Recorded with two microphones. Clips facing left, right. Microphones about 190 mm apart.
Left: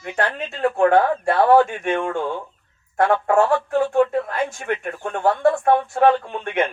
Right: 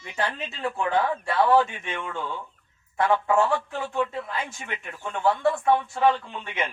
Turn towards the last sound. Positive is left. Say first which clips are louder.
# left 9 dB
turn(degrees=55)  # may be behind; listen again after turning